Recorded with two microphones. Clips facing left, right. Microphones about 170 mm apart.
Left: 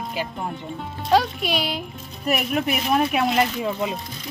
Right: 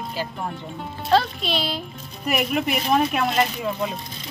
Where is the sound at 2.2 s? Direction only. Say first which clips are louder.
Even; centre (ahead or behind).